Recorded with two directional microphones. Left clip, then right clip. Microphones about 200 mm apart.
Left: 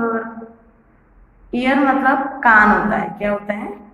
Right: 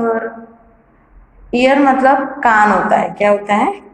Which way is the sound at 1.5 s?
20° right (ahead or behind).